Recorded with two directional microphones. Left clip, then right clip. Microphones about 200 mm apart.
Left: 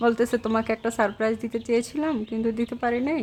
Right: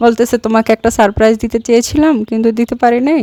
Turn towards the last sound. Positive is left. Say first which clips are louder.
# right 15 dB
turn(degrees=-50)  # may be behind; listen again after turning